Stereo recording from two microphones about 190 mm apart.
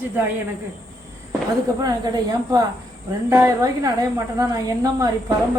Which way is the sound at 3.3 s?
15° right (ahead or behind).